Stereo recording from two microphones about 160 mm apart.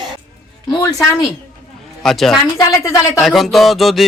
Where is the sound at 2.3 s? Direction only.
20° left (ahead or behind).